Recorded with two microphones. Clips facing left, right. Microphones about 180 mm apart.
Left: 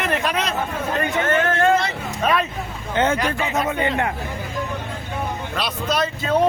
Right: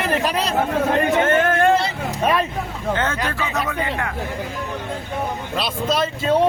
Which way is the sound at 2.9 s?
20° left (ahead or behind).